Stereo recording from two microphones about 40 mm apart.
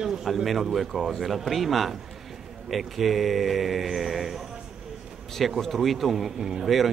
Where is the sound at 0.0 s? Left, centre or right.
Centre.